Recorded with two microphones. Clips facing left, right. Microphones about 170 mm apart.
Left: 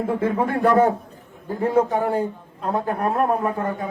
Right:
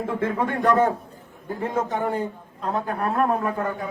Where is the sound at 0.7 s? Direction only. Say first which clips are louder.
Left 2 dB; 35° left (ahead or behind).